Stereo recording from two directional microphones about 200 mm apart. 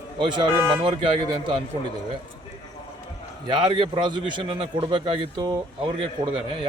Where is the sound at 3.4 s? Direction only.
25° right (ahead or behind).